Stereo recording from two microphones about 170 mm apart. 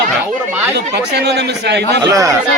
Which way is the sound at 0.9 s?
80° right.